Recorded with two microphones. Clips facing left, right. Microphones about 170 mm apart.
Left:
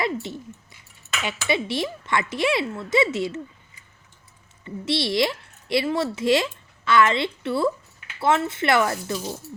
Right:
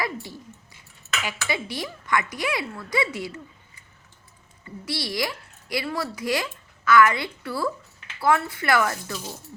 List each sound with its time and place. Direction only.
0.0 s a sound: 25° left (ahead or behind)
1.2 s a woman's voice: 25° left (ahead or behind)
4.6 s a woman's voice: 25° left (ahead or behind)